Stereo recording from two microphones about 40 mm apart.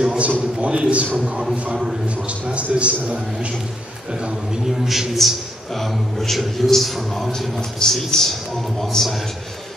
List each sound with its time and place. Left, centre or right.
0.2 s a man's voice: right
1.2 s a man's voice: centre
2.0 s a man's voice: right
4.8 s a man's voice: centre